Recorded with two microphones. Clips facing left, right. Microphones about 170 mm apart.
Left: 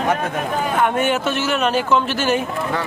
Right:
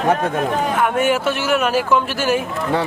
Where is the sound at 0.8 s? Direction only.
5° right (ahead or behind).